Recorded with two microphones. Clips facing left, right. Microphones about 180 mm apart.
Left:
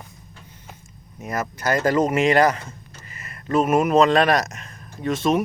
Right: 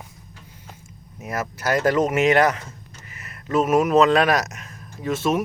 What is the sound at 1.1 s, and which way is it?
Speech, 5° right (ahead or behind).